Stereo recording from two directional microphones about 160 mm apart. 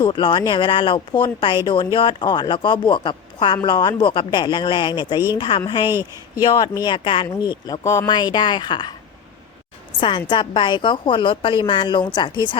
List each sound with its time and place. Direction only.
0.0 s speech: 30° left (ahead or behind)
5.9 s speech: 15° right (ahead or behind)
6.4 s speech: 25° left (ahead or behind)
10.0 s speech: 30° left (ahead or behind)